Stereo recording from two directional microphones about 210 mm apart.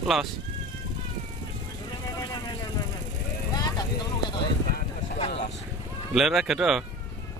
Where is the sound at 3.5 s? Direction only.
20° left (ahead or behind).